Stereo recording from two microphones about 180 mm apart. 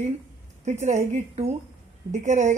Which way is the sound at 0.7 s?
40° right (ahead or behind).